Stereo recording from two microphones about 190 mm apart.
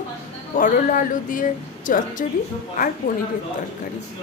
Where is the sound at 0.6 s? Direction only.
45° left (ahead or behind).